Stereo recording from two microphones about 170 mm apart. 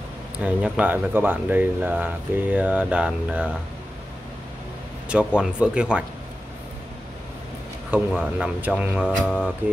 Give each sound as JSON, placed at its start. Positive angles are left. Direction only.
{"t": 0.4, "sound": "speech", "side_deg": -10}
{"t": 5.0, "sound": "speech", "side_deg": -5}
{"t": 7.9, "sound": "speech", "side_deg": -5}
{"t": 9.0, "sound": "mantra", "side_deg": 5}